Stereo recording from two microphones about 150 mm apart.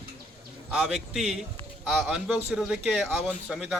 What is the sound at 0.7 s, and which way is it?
A man's voice, 5° right (ahead or behind).